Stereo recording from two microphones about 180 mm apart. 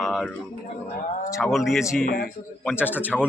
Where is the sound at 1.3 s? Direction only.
Centre (ahead or behind).